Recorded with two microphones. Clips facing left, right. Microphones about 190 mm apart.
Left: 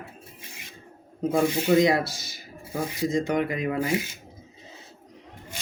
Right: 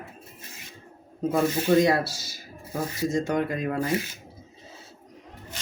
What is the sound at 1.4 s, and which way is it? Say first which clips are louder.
Speech: even; 15° left (ahead or behind).